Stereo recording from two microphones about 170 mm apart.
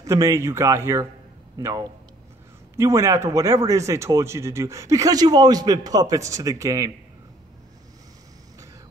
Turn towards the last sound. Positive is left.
turn(degrees=-20)  # may be behind; listen again after turning